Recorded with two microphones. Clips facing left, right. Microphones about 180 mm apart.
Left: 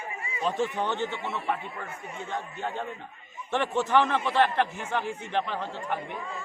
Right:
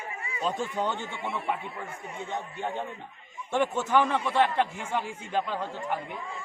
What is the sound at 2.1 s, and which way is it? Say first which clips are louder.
A man's voice: even; 15° right (ahead or behind).